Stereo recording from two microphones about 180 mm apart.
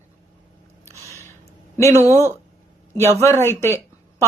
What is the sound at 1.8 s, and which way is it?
Speech, 15° left (ahead or behind).